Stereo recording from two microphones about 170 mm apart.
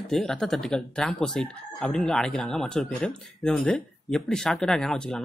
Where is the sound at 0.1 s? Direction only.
Centre (ahead or behind).